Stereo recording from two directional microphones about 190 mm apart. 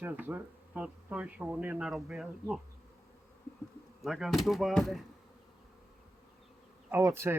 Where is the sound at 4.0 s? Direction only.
Centre (ahead or behind).